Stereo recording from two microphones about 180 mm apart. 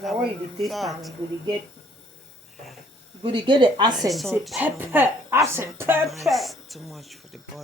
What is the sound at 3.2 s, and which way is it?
Speech, 25° right (ahead or behind).